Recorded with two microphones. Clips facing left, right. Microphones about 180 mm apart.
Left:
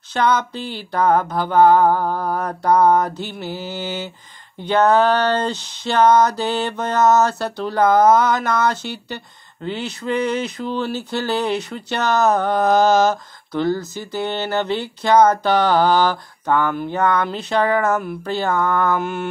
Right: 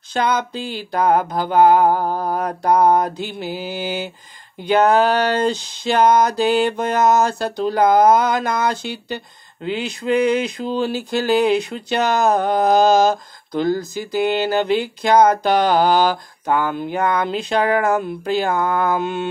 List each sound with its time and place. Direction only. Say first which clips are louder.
0.1 s speech: left 1 dB; 10° right (ahead or behind)